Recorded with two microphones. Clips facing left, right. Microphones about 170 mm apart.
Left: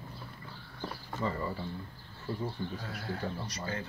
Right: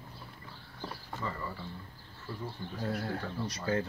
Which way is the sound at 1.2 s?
25° left (ahead or behind).